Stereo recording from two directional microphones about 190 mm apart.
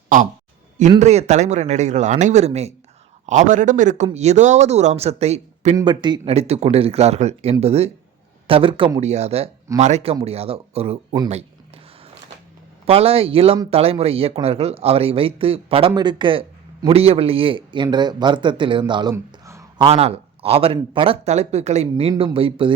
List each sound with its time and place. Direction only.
0.9 s a man's voice: 35° right (ahead or behind)
5.7 s a man's voice: 25° right (ahead or behind)
12.8 s a man's voice: 30° right (ahead or behind)
19.1 s a sound: 15° right (ahead or behind)
19.8 s a man's voice: 30° right (ahead or behind)